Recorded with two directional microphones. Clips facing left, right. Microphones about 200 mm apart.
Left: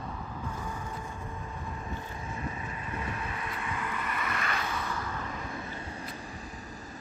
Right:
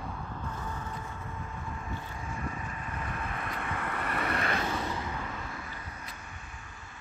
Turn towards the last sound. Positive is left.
turn(degrees=-25)  # may be behind; listen again after turning